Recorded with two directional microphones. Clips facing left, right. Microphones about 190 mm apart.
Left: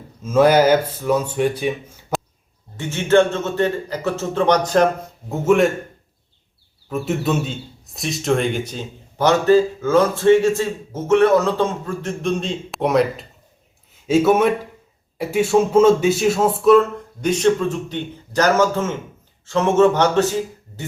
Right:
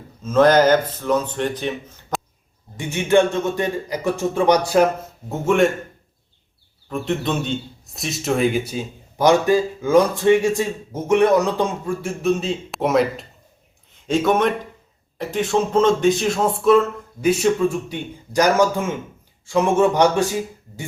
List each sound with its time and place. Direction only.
0.2 s speech: 10° left (ahead or behind)
2.7 s a man's voice: 15° right (ahead or behind)
6.8 s a man's voice: 5° left (ahead or behind); by 20.8 s 10° right (ahead or behind)